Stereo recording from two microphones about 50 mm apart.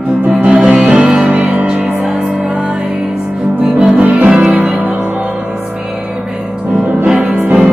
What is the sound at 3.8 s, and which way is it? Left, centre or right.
Music, right.